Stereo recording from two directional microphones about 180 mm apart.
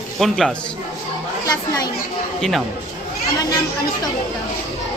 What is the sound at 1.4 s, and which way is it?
Speech, 20° left (ahead or behind).